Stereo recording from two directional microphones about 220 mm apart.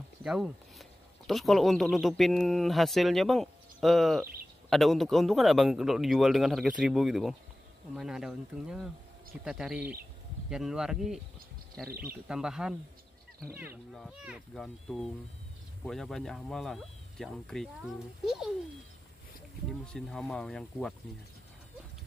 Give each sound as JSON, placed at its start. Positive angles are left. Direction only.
{"t": 0.2, "sound": "speech", "side_deg": 0}
{"t": 11.9, "sound": "speech", "side_deg": -45}
{"t": 12.3, "sound": "speech", "side_deg": -5}
{"t": 13.9, "sound": "speech", "side_deg": 0}
{"t": 19.8, "sound": "speech", "side_deg": 5}